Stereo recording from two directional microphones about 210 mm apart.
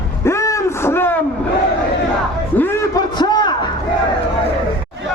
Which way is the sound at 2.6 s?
10° left (ahead or behind).